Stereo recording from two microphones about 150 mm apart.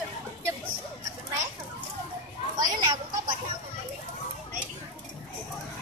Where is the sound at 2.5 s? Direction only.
25° right (ahead or behind).